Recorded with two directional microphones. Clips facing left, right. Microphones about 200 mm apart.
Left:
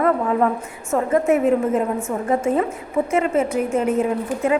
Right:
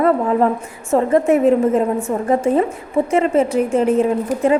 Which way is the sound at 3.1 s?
30° right (ahead or behind).